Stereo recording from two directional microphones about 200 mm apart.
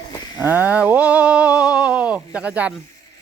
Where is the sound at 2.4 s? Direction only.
5° right (ahead or behind).